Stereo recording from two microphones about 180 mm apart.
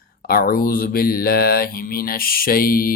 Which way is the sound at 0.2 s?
55° left (ahead or behind).